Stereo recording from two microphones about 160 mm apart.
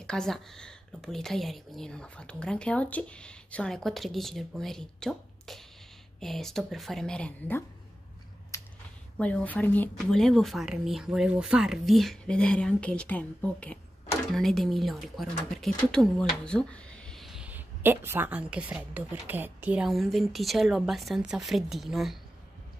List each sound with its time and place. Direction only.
0.0 s speech: 5° left (ahead or behind)
8.5 s a sound: 20° left (ahead or behind)
9.2 s speech: 10° left (ahead or behind)